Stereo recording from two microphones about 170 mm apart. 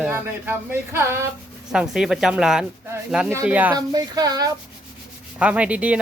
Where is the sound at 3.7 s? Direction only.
25° right (ahead or behind).